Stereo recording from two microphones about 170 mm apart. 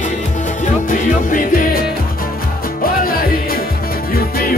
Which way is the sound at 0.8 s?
50° left (ahead or behind).